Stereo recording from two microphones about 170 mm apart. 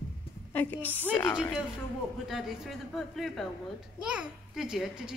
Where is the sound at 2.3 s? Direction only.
Centre (ahead or behind).